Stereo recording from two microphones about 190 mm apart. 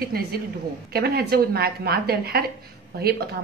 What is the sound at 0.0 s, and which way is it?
A woman's voice, 55° right (ahead or behind).